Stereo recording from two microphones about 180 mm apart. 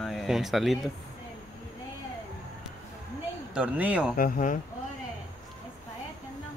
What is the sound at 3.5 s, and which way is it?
Speech, 5° right (ahead or behind).